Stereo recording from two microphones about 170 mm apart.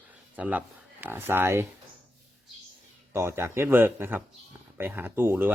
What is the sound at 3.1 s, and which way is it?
Speech, 15° right (ahead or behind).